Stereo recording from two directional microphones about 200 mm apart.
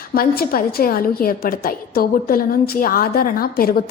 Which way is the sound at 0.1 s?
50° left (ahead or behind).